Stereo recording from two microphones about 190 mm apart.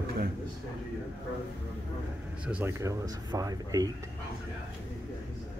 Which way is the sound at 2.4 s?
10° right (ahead or behind).